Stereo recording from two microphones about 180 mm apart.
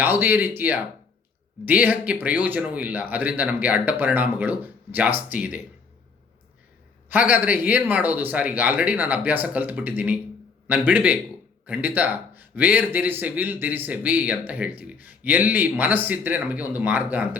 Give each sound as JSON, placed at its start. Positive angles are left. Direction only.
{"t": 0.0, "sound": "speech", "side_deg": -10}
{"t": 7.1, "sound": "speech", "side_deg": -10}